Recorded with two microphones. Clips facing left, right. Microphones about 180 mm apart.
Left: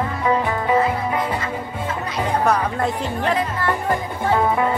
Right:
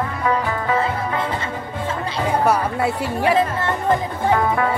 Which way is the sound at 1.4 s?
30° right (ahead or behind).